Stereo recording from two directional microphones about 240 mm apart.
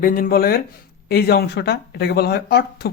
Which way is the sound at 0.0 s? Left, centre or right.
Left.